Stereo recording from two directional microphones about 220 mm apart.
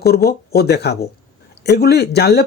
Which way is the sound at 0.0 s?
45° left (ahead or behind).